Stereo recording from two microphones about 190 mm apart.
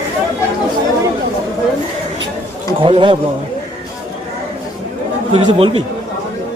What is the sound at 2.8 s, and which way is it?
Speech, 25° right (ahead or behind).